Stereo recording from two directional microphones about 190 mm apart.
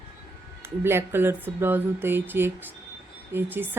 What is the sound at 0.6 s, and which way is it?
Speech, 10° right (ahead or behind).